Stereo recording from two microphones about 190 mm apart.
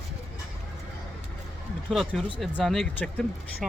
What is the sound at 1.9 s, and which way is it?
Speech, centre (ahead or behind).